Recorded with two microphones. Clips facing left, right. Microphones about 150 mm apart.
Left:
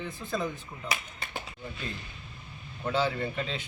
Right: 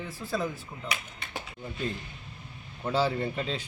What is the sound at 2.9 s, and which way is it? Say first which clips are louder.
Speech: right 2 dB; 35° right (ahead or behind).